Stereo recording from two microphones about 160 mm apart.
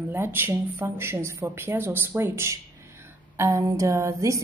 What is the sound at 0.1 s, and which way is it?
Speech, 15° right (ahead or behind).